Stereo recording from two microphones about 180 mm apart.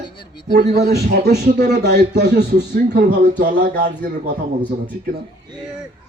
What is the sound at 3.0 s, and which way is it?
Speech, 50° right (ahead or behind).